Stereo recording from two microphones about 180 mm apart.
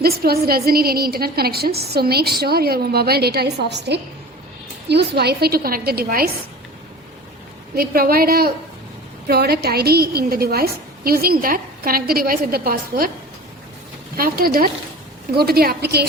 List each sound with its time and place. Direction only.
0.0 s a woman's voice: 60° right (ahead or behind)
7.8 s a woman's voice: 55° right (ahead or behind)
14.2 s a woman's voice: 55° right (ahead or behind)